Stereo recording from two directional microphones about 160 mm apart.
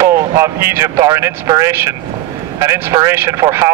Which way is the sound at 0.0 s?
15° right (ahead or behind).